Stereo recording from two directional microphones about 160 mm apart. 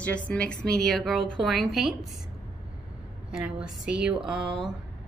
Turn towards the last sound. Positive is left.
turn(degrees=-5)  # may be behind; listen again after turning